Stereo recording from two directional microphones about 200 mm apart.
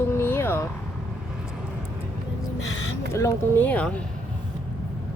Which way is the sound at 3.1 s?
15° left (ahead or behind).